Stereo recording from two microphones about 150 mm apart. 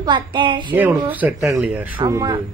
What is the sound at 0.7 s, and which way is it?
Speech, 10° right (ahead or behind).